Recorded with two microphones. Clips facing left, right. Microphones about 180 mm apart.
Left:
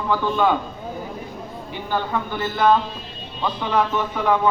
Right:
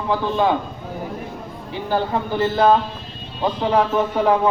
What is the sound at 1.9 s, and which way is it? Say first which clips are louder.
A man's voice: right 3 dB; 35° right (ahead or behind).